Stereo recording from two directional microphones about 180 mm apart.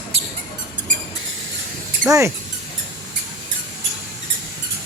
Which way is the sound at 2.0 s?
15° right (ahead or behind).